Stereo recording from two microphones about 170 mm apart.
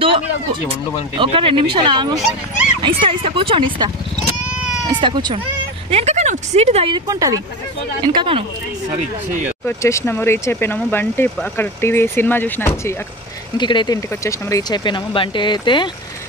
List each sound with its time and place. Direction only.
1.1 s speech: 30° right (ahead or behind)
5.9 s speech: 40° right (ahead or behind)
7.1 s speech: 20° right (ahead or behind)
9.7 s speech: 15° left (ahead or behind)
13.6 s speech: 25° left (ahead or behind)